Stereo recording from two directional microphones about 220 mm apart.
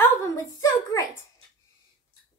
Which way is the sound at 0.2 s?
15° left (ahead or behind).